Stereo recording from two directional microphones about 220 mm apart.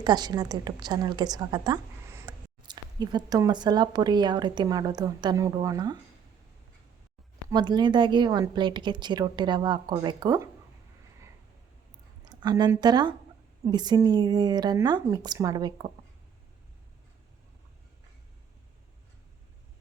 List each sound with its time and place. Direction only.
0.0 s a woman's voice: 20° right (ahead or behind)
7.5 s a woman's voice: 20° right (ahead or behind)
12.2 s a woman's voice: 20° right (ahead or behind)